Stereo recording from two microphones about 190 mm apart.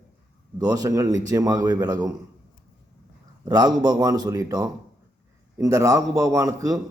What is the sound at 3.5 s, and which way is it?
A man's voice, 20° right (ahead or behind).